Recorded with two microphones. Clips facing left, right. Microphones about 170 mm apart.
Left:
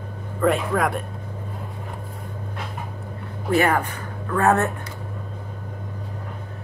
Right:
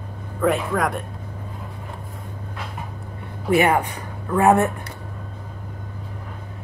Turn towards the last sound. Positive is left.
turn(degrees=-15)  # may be behind; listen again after turning